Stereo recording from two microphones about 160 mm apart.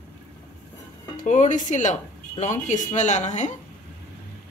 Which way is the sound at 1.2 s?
55° left (ahead or behind).